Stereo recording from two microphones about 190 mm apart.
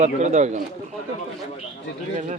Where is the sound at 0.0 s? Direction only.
40° right (ahead or behind).